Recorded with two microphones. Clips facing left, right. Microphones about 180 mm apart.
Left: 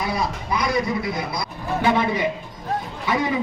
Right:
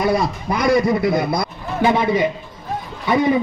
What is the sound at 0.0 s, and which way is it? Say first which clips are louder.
A man's voice: right 7 dB; 50° right (ahead or behind).